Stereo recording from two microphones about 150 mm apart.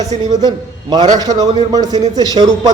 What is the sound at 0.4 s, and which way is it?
A man's voice, 30° right (ahead or behind).